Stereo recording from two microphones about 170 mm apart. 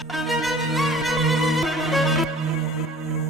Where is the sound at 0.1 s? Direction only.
Centre (ahead or behind).